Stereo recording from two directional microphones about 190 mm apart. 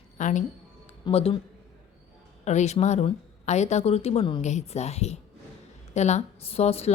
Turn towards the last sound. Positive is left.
turn(degrees=35)  # may be behind; listen again after turning